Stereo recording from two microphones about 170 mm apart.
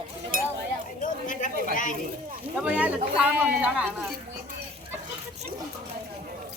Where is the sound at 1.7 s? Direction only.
50° left (ahead or behind).